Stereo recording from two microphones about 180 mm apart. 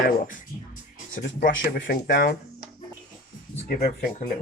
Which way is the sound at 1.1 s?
65° left (ahead or behind).